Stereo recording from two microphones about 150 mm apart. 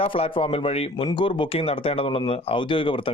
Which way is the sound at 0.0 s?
40° left (ahead or behind).